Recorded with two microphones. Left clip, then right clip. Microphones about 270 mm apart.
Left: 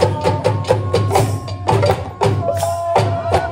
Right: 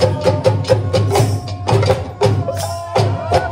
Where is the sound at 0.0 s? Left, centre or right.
Left.